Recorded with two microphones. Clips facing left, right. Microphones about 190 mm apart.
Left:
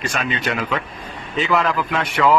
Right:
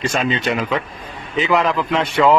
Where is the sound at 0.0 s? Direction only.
25° right (ahead or behind).